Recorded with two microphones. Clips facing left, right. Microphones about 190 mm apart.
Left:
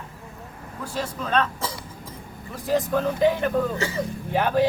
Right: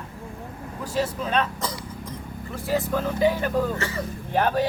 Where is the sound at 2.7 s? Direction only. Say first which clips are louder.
Left 2 dB; 5° right (ahead or behind).